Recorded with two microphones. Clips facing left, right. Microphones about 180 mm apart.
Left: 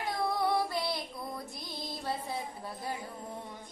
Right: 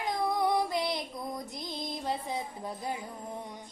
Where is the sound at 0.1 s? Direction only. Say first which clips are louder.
Right 2 dB; 20° right (ahead or behind).